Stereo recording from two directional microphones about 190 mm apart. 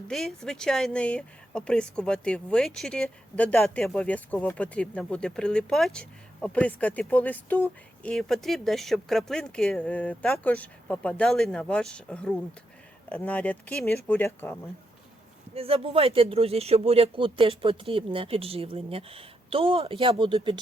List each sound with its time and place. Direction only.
0.1 s speech: centre (ahead or behind)
15.5 s speech: 30° right (ahead or behind)